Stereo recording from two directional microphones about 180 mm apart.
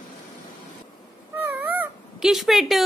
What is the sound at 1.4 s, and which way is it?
Cat, 10° right (ahead or behind).